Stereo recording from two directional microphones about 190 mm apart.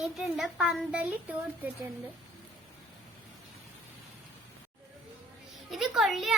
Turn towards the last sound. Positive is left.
turn(degrees=0)  # may be behind; listen again after turning